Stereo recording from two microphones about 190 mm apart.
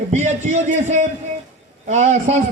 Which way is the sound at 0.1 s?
40° right (ahead or behind).